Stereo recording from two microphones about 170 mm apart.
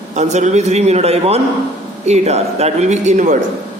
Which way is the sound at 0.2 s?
45° right (ahead or behind).